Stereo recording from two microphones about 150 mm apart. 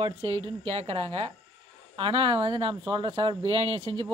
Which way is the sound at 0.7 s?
40° right (ahead or behind).